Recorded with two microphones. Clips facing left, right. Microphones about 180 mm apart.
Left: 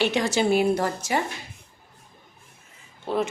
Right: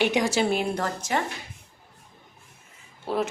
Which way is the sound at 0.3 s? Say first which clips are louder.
Left 4 dB; 5° left (ahead or behind).